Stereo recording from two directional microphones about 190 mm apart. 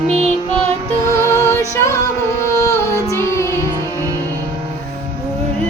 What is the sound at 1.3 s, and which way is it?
Music, 15° left (ahead or behind).